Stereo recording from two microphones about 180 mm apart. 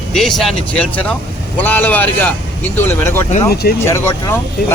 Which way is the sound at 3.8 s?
15° left (ahead or behind).